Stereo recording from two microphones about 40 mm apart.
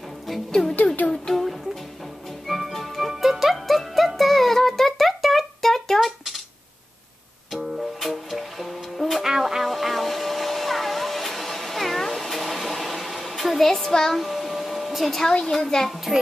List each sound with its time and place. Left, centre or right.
0.5 s music: centre
7.5 s music: centre
9.2 s music: centre
9.6 s a sound: centre
15.0 s a sound: centre
15.5 s a child's voice: centre